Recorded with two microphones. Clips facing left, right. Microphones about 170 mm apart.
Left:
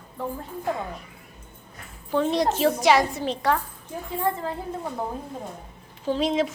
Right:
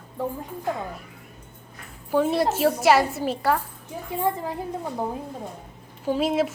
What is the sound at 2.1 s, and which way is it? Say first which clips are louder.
A woman's voice: right 1 dB; 5° right (ahead or behind).